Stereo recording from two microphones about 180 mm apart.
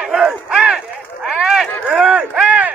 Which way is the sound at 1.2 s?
5° right (ahead or behind).